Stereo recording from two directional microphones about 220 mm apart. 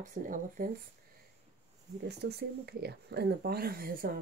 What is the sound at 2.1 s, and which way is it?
Speech, 50° right (ahead or behind).